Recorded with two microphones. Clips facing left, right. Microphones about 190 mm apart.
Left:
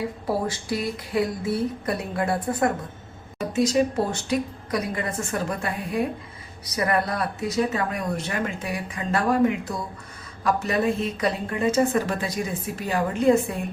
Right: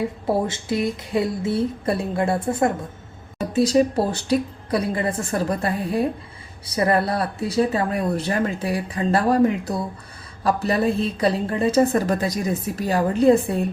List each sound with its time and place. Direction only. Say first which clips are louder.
0.3 s speech: right 3 dB; 25° right (ahead or behind)